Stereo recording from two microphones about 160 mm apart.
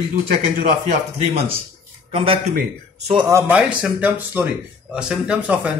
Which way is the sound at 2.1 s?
35° right (ahead or behind).